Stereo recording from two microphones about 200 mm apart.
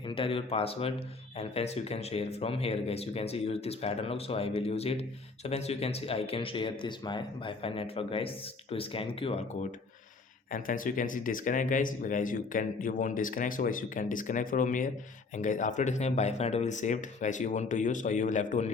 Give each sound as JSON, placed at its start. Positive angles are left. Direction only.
{"t": 0.1, "sound": "speech", "side_deg": 25}
{"t": 10.5, "sound": "speech", "side_deg": 40}